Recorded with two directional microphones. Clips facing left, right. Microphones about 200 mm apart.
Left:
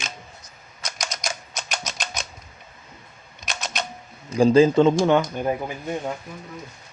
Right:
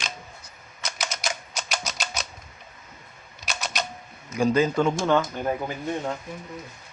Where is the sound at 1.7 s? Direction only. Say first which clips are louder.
Even; 10° right (ahead or behind).